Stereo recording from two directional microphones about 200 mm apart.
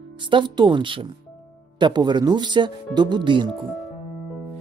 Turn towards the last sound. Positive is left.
turn(degrees=-25)  # may be behind; listen again after turning